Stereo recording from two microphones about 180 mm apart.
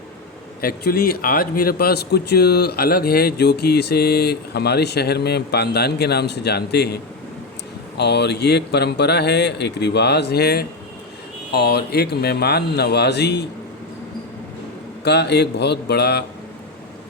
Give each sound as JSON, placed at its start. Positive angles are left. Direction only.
{"t": 0.6, "sound": "speech", "side_deg": 55}
{"t": 15.0, "sound": "speech", "side_deg": 70}